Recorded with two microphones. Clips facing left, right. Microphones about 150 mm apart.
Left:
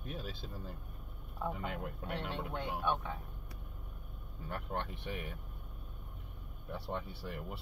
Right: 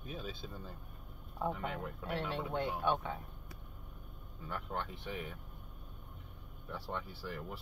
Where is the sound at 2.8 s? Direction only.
15° right (ahead or behind).